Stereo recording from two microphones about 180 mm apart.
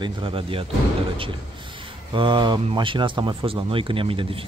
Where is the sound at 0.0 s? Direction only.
30° right (ahead or behind).